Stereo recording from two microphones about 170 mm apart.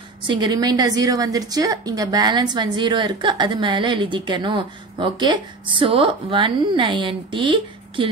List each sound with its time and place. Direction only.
0.3 s a woman's voice: 25° right (ahead or behind)